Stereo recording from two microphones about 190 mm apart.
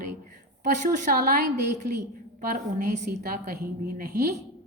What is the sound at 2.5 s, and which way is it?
Speech, 50° right (ahead or behind).